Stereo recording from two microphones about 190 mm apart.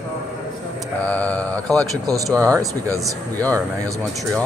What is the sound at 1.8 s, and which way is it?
Speech, 20° right (ahead or behind).